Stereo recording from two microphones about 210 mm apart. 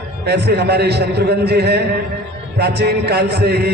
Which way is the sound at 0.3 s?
50° right (ahead or behind).